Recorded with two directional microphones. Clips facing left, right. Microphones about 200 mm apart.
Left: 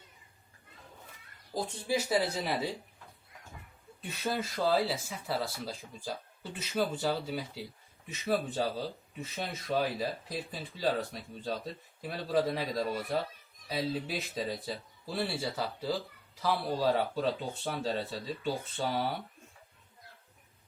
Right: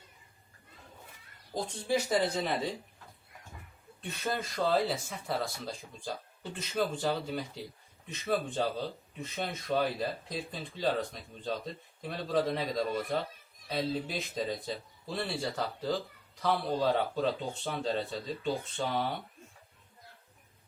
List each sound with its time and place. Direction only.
1.5 s speech: 5° left (ahead or behind)
4.0 s speech: 5° left (ahead or behind)